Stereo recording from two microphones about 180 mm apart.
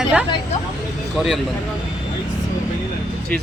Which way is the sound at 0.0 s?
5° right (ahead or behind).